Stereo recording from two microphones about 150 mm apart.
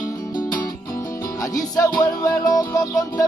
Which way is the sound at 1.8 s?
20° left (ahead or behind).